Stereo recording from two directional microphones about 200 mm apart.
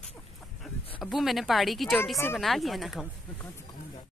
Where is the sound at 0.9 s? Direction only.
Centre (ahead or behind).